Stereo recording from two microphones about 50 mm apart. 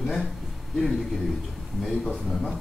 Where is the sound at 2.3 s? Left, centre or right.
Centre.